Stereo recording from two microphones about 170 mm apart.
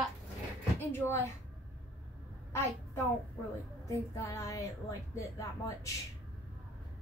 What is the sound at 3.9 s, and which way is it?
A woman's voice, 15° left (ahead or behind).